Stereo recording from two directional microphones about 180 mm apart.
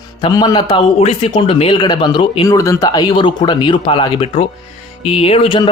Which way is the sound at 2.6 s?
20° left (ahead or behind).